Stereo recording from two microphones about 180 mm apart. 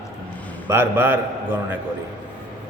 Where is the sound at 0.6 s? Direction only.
10° right (ahead or behind).